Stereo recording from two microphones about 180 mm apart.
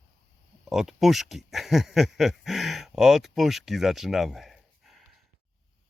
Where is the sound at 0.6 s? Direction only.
Centre (ahead or behind).